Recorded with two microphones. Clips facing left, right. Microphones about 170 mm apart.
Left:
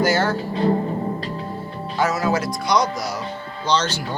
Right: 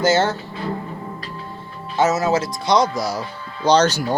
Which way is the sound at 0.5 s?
35° left (ahead or behind).